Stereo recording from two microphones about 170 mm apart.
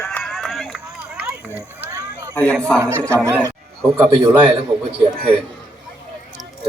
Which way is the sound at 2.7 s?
15° right (ahead or behind).